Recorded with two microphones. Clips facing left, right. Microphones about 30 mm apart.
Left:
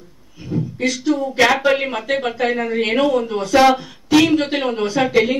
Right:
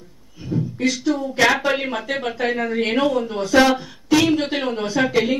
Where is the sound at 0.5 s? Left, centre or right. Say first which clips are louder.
Left 1 dB; centre.